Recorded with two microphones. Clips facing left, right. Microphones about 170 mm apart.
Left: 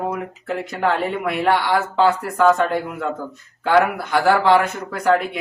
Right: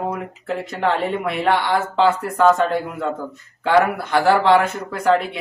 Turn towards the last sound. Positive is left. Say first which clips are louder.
# even
turn(degrees=0)  # may be behind; listen again after turning